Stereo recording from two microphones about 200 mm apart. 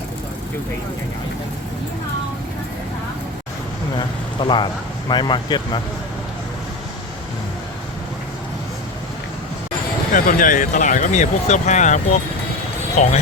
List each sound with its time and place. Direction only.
3.9 s speech: 25° left (ahead or behind)
10.1 s speech: 45° left (ahead or behind)
13.0 s speech: 35° left (ahead or behind)